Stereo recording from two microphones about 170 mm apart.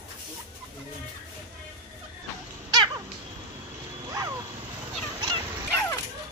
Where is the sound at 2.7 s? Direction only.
25° right (ahead or behind).